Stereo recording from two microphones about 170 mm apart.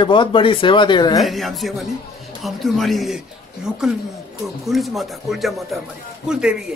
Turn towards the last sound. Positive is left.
turn(degrees=-5)  # may be behind; listen again after turning